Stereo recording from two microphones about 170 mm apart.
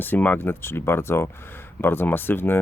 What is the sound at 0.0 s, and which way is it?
Speech, 10° left (ahead or behind).